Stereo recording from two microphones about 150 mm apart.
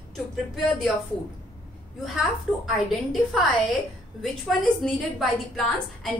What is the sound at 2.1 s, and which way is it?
A woman's voice, centre (ahead or behind).